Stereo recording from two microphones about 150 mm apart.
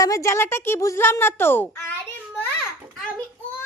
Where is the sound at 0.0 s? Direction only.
20° left (ahead or behind).